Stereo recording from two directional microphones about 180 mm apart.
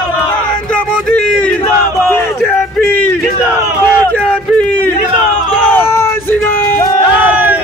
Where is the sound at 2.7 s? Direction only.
10° left (ahead or behind).